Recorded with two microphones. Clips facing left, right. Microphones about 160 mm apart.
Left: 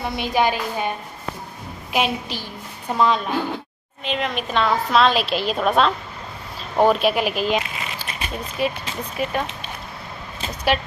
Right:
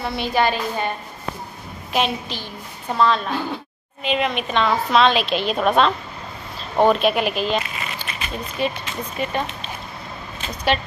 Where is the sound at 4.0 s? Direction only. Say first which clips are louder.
Right 3 dB; 5° right (ahead or behind).